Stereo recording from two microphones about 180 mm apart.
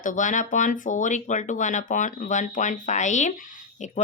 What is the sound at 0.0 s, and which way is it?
Speech, 45° left (ahead or behind).